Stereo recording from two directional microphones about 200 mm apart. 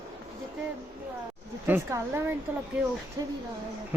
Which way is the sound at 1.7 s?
15° right (ahead or behind).